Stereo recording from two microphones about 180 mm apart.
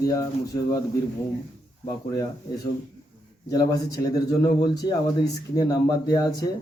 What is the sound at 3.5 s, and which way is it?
A man's voice, 20° left (ahead or behind).